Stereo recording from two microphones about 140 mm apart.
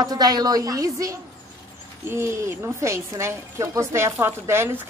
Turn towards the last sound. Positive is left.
turn(degrees=-15)  # may be behind; listen again after turning